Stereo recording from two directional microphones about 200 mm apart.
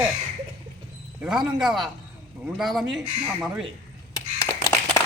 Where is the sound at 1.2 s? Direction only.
5° right (ahead or behind).